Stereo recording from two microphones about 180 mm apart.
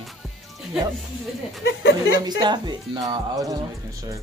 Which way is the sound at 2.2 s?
25° right (ahead or behind).